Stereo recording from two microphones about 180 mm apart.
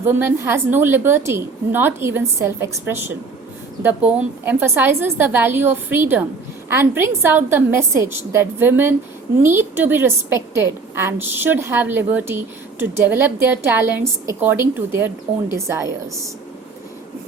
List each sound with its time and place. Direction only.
0.0 s a woman's voice: 10° right (ahead or behind)